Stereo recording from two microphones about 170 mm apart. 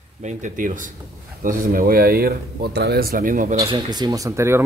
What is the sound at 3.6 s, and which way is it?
Speech, 25° right (ahead or behind).